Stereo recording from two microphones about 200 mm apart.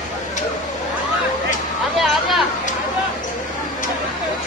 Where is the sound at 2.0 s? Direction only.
Centre (ahead or behind).